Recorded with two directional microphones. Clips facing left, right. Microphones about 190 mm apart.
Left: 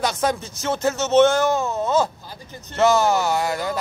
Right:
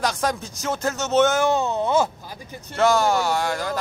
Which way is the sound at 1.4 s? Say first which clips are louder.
Even; 15° right (ahead or behind).